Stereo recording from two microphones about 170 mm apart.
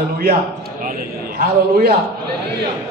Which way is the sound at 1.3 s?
65° right (ahead or behind).